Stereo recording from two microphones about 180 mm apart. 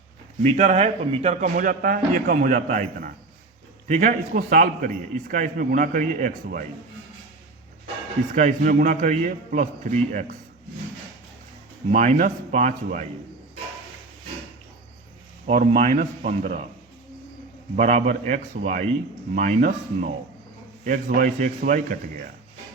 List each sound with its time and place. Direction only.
0.4 s a man's voice: 40° right (ahead or behind)
8.3 s a man's voice: 45° right (ahead or behind)
11.9 s a man's voice: 40° right (ahead or behind)
15.5 s a man's voice: 40° right (ahead or behind)
17.7 s a man's voice: 40° right (ahead or behind)